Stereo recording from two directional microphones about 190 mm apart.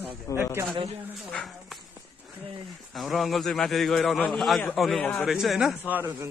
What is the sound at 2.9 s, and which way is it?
A man's voice, centre (ahead or behind).